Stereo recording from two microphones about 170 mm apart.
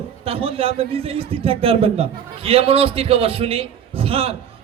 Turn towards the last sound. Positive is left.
turn(degrees=-35)  # may be behind; listen again after turning